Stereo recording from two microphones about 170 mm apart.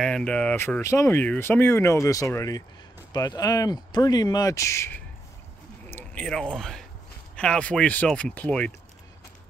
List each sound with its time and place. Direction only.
0.0 s speech: 5° left (ahead or behind)